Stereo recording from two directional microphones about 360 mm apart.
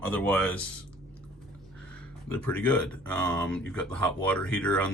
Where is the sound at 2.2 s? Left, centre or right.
Centre.